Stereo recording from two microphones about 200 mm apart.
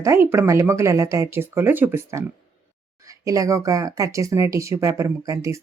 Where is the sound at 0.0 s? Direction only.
15° right (ahead or behind).